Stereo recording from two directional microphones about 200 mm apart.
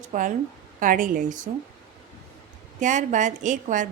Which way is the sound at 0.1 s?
40° right (ahead or behind).